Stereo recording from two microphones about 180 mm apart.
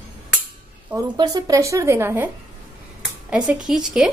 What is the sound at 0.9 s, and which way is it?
A woman's voice, 20° right (ahead or behind).